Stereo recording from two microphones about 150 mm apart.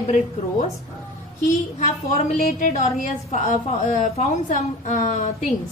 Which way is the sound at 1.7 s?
50° left (ahead or behind).